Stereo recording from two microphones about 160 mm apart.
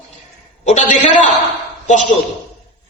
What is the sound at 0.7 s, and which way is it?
Speech, 50° left (ahead or behind).